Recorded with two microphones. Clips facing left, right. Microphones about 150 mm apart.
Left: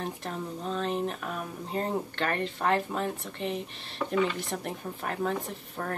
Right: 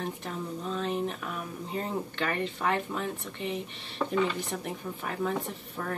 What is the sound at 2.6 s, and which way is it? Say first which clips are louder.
Speech: left 4 dB; 35° left (ahead or behind).